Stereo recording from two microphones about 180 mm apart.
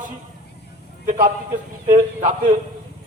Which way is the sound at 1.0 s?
45° right (ahead or behind).